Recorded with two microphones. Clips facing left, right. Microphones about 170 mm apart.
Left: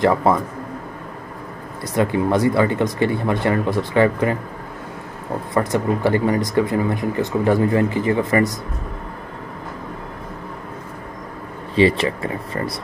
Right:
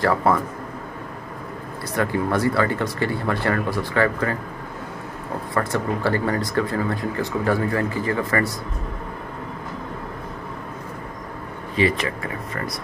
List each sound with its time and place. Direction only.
0.0 s speech: 20° left (ahead or behind)
2.0 s speech: 20° left (ahead or behind)
5.5 s speech: 20° left (ahead or behind)
11.7 s speech: 30° left (ahead or behind)